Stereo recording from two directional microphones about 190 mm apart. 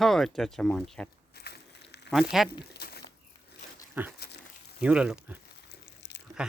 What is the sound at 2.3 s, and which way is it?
Speech, centre (ahead or behind).